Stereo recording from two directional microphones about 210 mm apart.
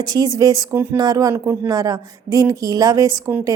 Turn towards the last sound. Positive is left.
turn(degrees=-15)  # may be behind; listen again after turning